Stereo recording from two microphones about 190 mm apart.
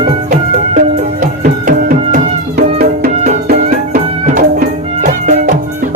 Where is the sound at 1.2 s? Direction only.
45° right (ahead or behind).